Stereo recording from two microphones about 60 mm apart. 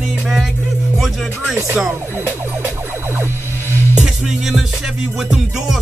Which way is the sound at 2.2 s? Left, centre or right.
Right.